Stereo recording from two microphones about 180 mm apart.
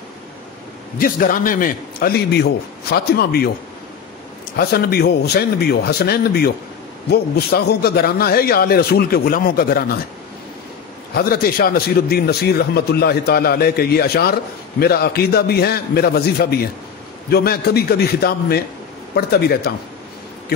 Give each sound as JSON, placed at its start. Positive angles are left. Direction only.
{"t": 0.9, "sound": "a man's voice", "side_deg": 50}
{"t": 4.6, "sound": "a man's voice", "side_deg": 60}
{"t": 11.1, "sound": "a man's voice", "side_deg": 55}